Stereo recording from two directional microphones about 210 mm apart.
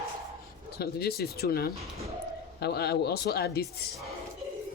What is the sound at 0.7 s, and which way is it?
Speech, 50° left (ahead or behind).